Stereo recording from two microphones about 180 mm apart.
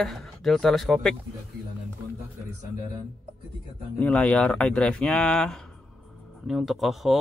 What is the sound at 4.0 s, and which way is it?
Speech, 5° left (ahead or behind).